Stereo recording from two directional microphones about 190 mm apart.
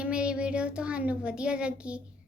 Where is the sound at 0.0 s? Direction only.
5° right (ahead or behind).